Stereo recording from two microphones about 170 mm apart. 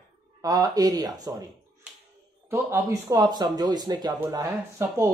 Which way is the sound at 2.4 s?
15° right (ahead or behind).